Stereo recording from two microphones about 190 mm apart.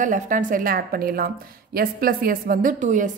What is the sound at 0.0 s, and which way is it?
A woman's voice, 45° right (ahead or behind).